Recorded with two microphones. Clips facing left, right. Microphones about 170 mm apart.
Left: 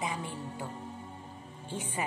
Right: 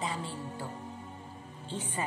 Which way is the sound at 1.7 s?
15° left (ahead or behind).